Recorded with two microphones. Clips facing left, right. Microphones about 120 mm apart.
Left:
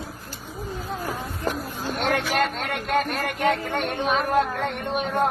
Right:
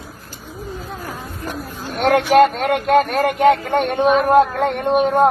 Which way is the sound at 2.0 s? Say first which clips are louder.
Right 11 dB; 65° right (ahead or behind).